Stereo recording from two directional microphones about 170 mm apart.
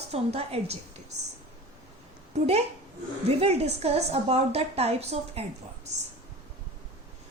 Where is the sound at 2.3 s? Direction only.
40° right (ahead or behind).